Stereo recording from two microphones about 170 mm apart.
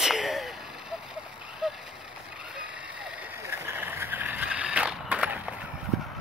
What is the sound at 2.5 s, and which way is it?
Vehicle, 5° right (ahead or behind).